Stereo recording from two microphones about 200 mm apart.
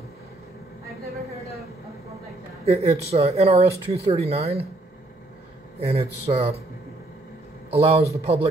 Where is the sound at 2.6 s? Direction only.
30° right (ahead or behind).